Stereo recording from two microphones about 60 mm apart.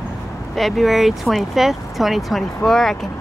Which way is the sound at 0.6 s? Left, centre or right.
Centre.